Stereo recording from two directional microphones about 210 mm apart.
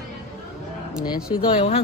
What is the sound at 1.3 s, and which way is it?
Speech, 25° left (ahead or behind).